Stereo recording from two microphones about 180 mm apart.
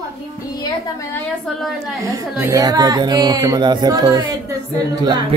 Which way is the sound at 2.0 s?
20° right (ahead or behind).